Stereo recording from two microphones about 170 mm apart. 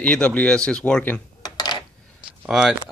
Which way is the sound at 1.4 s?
25° left (ahead or behind).